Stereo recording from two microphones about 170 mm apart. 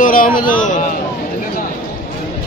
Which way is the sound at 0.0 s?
50° left (ahead or behind).